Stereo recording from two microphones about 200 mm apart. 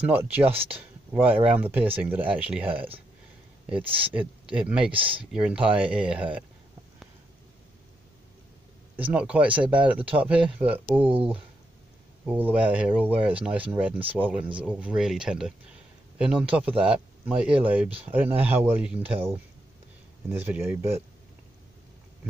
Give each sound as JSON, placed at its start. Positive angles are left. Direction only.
{"t": 0.1, "sound": "speech", "side_deg": -10}
{"t": 3.8, "sound": "speech", "side_deg": -25}
{"t": 4.1, "sound": "speech", "side_deg": -5}
{"t": 4.9, "sound": "speech", "side_deg": -25}
{"t": 5.3, "sound": "speech", "side_deg": -5}
{"t": 9.1, "sound": "speech", "side_deg": -5}
{"t": 12.3, "sound": "speech", "side_deg": -10}